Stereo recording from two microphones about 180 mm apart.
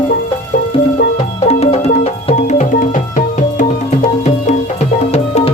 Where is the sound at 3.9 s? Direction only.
40° left (ahead or behind).